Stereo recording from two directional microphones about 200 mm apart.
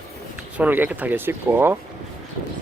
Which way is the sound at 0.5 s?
10° right (ahead or behind).